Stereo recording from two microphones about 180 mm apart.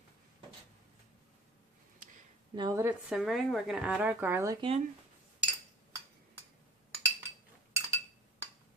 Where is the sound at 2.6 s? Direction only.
20° right (ahead or behind).